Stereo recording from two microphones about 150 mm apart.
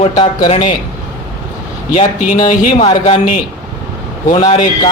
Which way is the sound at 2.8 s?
45° left (ahead or behind).